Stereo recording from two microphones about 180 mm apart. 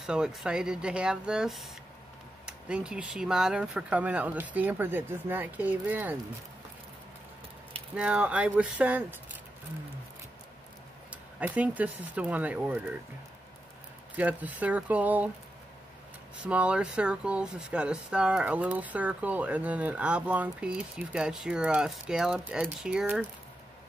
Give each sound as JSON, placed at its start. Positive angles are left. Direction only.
{"t": 0.0, "sound": "speech", "side_deg": -5}
{"t": 7.9, "sound": "speech", "side_deg": -5}
{"t": 11.3, "sound": "speech", "side_deg": -10}
{"t": 14.1, "sound": "speech", "side_deg": -10}
{"t": 16.4, "sound": "speech", "side_deg": -5}